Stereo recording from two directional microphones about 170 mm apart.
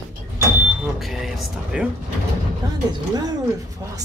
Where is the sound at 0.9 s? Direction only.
Centre (ahead or behind).